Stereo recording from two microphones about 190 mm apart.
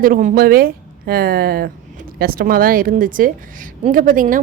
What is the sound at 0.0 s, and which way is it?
Speech, 45° right (ahead or behind).